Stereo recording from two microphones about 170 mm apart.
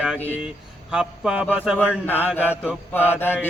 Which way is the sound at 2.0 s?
10° left (ahead or behind).